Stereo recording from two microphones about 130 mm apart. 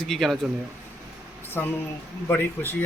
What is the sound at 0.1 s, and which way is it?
Speech, centre (ahead or behind).